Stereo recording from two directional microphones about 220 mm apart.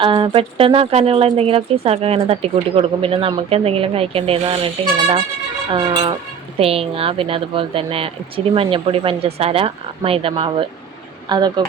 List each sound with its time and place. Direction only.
0.0 s speech: 25° right (ahead or behind)